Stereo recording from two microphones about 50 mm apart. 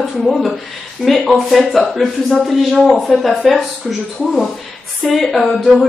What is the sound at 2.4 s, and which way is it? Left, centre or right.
A woman's voice, centre.